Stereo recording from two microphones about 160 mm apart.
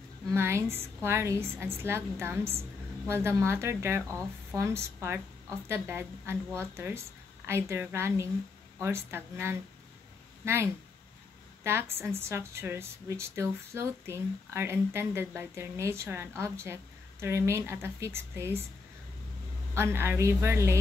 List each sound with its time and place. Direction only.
0.3 s a woman's voice: 15° right (ahead or behind)
19.7 s a woman's voice: 15° right (ahead or behind)